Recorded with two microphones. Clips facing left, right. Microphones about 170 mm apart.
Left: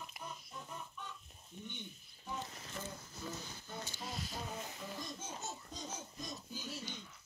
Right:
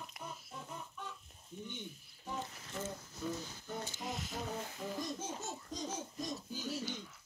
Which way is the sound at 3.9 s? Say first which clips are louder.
Right 3 dB; 20° right (ahead or behind).